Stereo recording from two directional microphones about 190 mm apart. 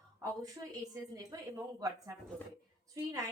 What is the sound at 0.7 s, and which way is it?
A woman's voice, 20° right (ahead or behind).